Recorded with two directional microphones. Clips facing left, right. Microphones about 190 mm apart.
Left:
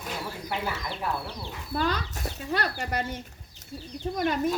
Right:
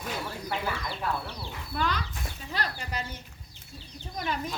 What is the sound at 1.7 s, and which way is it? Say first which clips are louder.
Speech: left 3 dB; 40° left (ahead or behind).